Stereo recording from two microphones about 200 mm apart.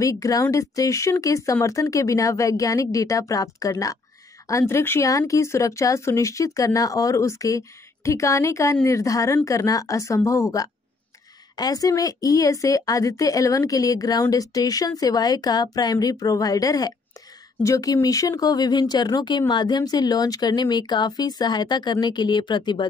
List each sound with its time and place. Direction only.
0.0 s a woman's voice: 15° left (ahead or behind)